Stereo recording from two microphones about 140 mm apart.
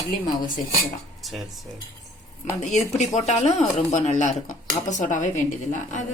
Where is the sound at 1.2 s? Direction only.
Centre (ahead or behind).